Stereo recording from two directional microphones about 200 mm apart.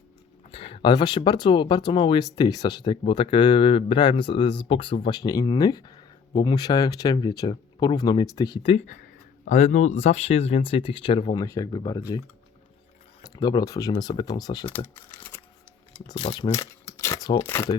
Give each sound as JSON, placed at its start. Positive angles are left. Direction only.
{"t": 0.5, "sound": "speech", "side_deg": 30}
{"t": 8.7, "sound": "speech", "side_deg": 40}
{"t": 13.3, "sound": "speech", "side_deg": 20}
{"t": 16.1, "sound": "speech", "side_deg": 30}
{"t": 16.6, "sound": "a sound", "side_deg": 15}